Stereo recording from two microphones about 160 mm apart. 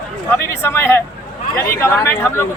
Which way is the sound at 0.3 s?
15° left (ahead or behind).